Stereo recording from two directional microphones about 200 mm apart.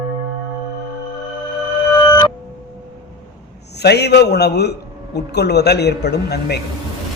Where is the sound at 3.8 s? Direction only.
55° left (ahead or behind).